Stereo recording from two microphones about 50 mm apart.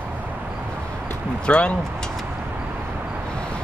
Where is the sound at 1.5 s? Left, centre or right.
Left.